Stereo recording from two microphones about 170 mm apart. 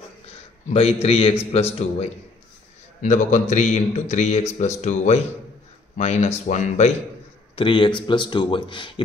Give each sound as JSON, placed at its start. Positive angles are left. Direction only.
{"t": 0.7, "sound": "a man's voice", "side_deg": 35}
{"t": 7.5, "sound": "speech", "side_deg": 30}